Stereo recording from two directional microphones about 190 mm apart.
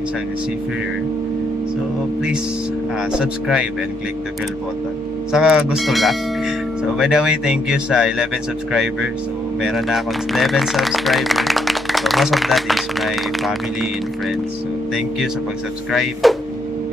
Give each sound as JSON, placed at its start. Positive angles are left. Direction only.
{"t": 3.1, "sound": "speech", "side_deg": -5}
{"t": 5.3, "sound": "speech", "side_deg": -5}
{"t": 9.6, "sound": "speech", "side_deg": 0}
{"t": 15.9, "sound": "speech", "side_deg": 0}